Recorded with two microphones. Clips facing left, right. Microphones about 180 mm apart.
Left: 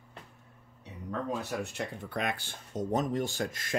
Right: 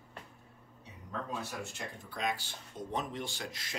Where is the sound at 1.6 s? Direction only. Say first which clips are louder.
Left 7 dB; 60° left (ahead or behind); by 3.7 s 45° left (ahead or behind).